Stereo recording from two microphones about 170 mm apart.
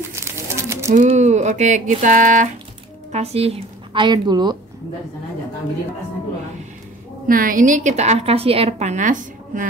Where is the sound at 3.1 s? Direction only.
40° right (ahead or behind).